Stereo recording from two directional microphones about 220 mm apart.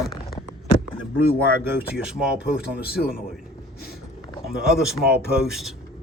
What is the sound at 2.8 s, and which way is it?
Speech, 45° left (ahead or behind).